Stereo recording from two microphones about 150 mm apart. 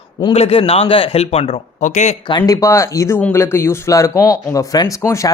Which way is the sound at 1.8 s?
50° left (ahead or behind).